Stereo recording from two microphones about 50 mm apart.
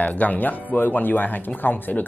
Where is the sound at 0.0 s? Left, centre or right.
Left.